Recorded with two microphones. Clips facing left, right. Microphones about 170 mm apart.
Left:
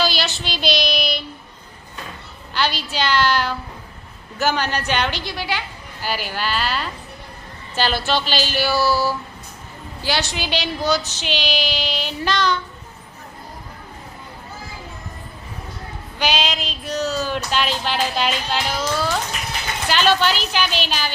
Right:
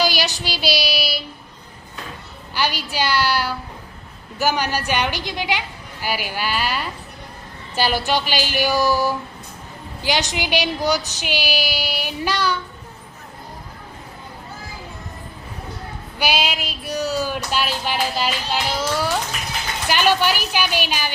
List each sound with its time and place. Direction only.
0.0 s child singing: 10° right (ahead or behind)
2.6 s music: 10° right (ahead or behind)
16.1 s music: 10° right (ahead or behind)